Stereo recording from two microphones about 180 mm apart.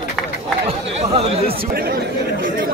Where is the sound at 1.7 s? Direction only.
55° right (ahead or behind).